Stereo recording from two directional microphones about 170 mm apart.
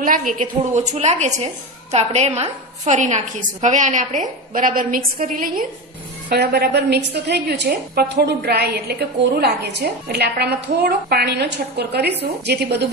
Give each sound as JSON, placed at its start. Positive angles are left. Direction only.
{"t": 0.3, "sound": "a woman's voice", "side_deg": -45}
{"t": 6.2, "sound": "a woman's voice", "side_deg": -70}